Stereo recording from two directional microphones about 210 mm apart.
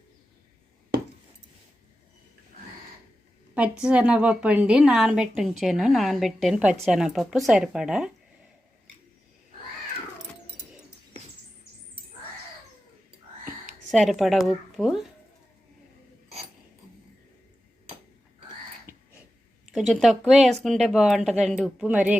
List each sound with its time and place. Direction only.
3.5 s a woman's voice: 5° right (ahead or behind)
13.9 s a woman's voice: centre (ahead or behind)
18.9 s a sound: 45° right (ahead or behind)
19.7 s a woman's voice: centre (ahead or behind)